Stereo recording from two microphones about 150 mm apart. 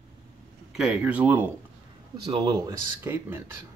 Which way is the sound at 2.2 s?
30° right (ahead or behind).